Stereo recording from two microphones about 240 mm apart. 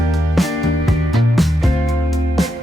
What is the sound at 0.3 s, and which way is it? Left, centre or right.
Music, centre.